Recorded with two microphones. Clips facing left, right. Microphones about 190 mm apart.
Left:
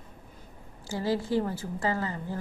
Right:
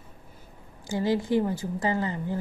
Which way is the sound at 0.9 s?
15° right (ahead or behind).